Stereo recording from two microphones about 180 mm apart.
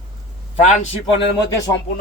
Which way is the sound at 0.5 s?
40° left (ahead or behind).